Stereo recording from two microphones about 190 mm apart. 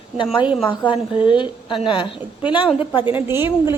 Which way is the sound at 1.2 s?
25° left (ahead or behind).